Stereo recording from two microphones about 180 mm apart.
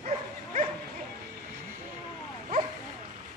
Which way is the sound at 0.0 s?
40° right (ahead or behind).